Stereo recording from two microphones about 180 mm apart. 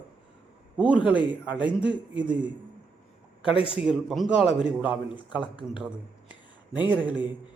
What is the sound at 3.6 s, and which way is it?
Speech, 30° left (ahead or behind).